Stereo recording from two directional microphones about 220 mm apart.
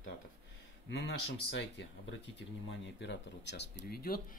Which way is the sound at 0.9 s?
55° left (ahead or behind).